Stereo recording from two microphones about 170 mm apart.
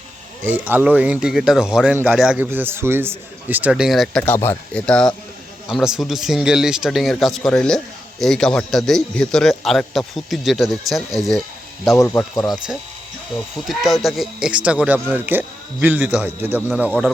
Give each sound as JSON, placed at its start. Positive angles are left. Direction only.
{"t": 0.4, "sound": "speech", "side_deg": -10}
{"t": 13.7, "sound": "speech", "side_deg": 0}